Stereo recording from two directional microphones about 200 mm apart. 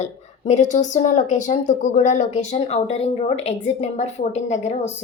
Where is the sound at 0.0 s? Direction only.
35° left (ahead or behind).